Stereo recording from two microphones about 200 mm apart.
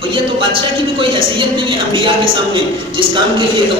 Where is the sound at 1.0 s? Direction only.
25° right (ahead or behind).